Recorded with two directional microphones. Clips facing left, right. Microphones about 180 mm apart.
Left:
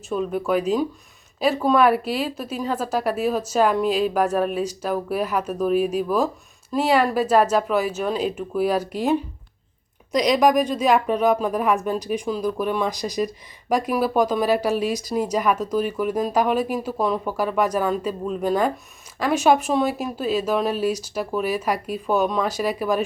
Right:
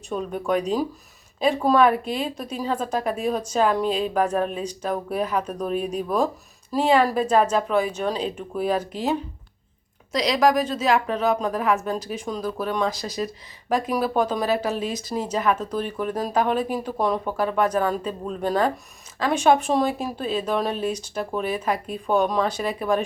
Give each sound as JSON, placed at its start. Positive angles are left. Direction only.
{"t": 0.1, "sound": "speech", "side_deg": 5}